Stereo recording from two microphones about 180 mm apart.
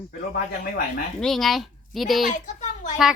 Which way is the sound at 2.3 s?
40° left (ahead or behind).